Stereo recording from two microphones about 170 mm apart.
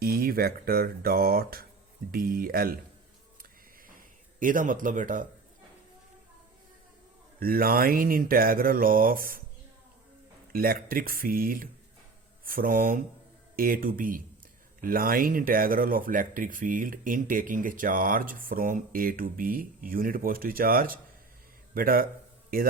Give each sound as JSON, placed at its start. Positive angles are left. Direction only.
{"t": 0.0, "sound": "speech", "side_deg": -60}
{"t": 4.4, "sound": "speech", "side_deg": -50}
{"t": 7.3, "sound": "speech", "side_deg": -60}
{"t": 10.5, "sound": "speech", "side_deg": -60}